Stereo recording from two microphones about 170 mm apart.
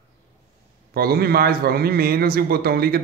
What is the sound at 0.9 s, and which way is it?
A man's voice, 65° right (ahead or behind).